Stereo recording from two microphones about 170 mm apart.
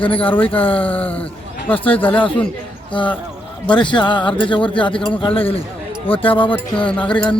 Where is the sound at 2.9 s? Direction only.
30° left (ahead or behind).